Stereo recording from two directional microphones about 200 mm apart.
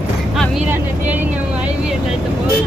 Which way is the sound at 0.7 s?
10° right (ahead or behind).